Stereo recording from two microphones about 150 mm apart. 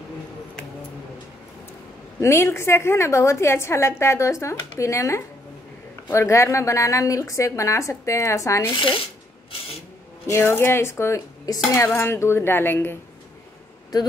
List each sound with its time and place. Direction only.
2.1 s a woman's voice: 20° left (ahead or behind)
10.2 s a woman's voice: 15° left (ahead or behind)